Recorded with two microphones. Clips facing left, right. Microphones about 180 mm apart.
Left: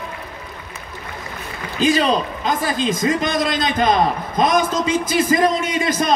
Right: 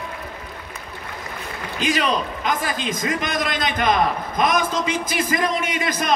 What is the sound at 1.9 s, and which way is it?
A man's voice, 30° left (ahead or behind).